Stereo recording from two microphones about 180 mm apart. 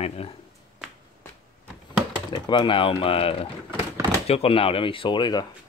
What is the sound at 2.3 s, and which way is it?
Speech, 25° left (ahead or behind).